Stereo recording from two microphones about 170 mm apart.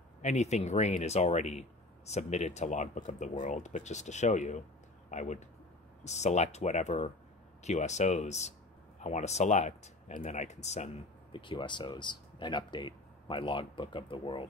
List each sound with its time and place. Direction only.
0.2 s speech: 40° left (ahead or behind)
11.3 s speech: 30° left (ahead or behind)